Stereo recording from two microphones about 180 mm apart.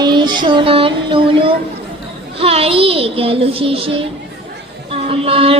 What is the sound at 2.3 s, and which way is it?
A child's voice, 35° right (ahead or behind).